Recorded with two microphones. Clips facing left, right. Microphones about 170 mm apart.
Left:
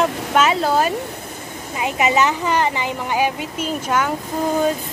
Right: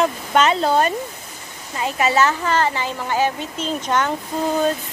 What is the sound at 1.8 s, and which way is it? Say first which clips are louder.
A woman's voice: even; 15° left (ahead or behind).